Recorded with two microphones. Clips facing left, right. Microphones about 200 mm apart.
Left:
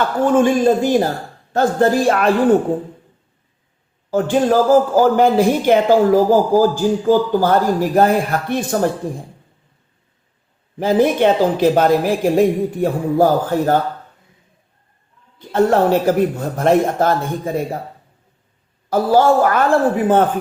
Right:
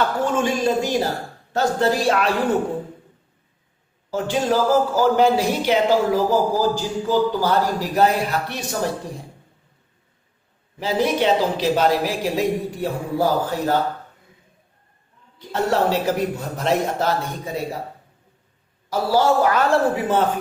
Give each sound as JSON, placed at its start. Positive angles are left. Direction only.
{"t": 0.3, "sound": "a man's voice", "side_deg": 50}
{"t": 4.1, "sound": "a man's voice", "side_deg": 50}
{"t": 10.8, "sound": "a man's voice", "side_deg": 50}
{"t": 15.4, "sound": "a man's voice", "side_deg": 50}
{"t": 18.9, "sound": "a man's voice", "side_deg": 50}